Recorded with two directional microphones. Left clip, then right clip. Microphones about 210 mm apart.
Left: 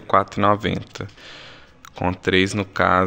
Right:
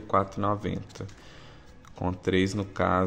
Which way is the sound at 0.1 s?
20° left (ahead or behind).